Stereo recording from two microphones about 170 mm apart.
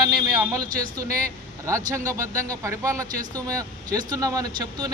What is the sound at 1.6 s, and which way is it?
A man's voice, 15° right (ahead or behind).